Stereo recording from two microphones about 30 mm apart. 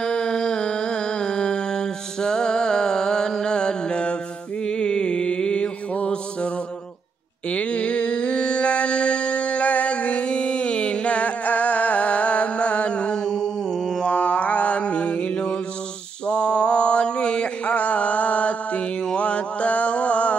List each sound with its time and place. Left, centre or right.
0.0 s music: centre; by 4.2 s left
4.6 s mantra: left
5.9 s music: left
7.4 s a sound: left
13.2 s music: centre
14.0 s mantra: left